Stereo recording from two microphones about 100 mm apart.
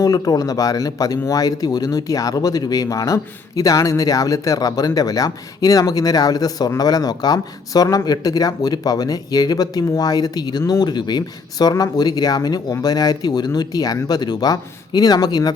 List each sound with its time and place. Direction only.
0.0 s speech: 40° left (ahead or behind)